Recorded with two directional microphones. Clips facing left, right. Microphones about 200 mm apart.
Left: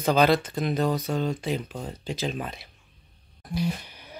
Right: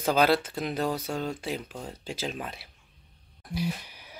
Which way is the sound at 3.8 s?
5° right (ahead or behind).